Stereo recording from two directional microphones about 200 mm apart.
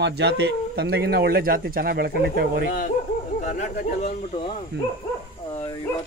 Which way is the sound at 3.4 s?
35° left (ahead or behind).